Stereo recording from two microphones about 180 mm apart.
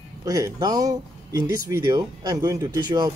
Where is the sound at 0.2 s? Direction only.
20° right (ahead or behind).